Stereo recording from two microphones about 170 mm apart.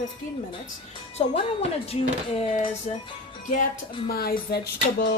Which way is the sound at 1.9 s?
40° left (ahead or behind).